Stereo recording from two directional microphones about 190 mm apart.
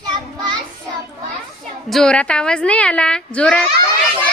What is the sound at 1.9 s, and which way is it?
Speech, 5° left (ahead or behind).